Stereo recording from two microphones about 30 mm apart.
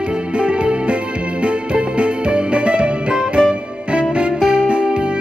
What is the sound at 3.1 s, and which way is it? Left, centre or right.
Music, right.